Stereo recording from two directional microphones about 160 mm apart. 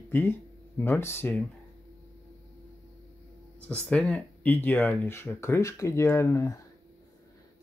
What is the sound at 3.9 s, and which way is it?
Speech, 5° left (ahead or behind).